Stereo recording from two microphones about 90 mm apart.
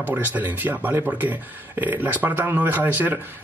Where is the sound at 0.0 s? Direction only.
20° right (ahead or behind).